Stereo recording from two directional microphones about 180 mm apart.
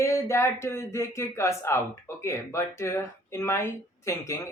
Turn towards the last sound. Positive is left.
turn(degrees=15)  # may be behind; listen again after turning